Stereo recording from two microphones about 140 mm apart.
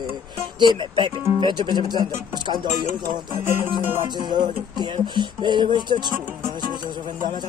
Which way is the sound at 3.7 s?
30° right (ahead or behind).